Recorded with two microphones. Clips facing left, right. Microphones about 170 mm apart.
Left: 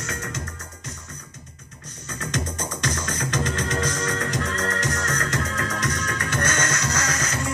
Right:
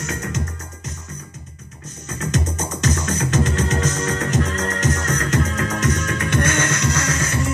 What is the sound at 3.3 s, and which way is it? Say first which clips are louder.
Music: right 4 dB; 20° right (ahead or behind).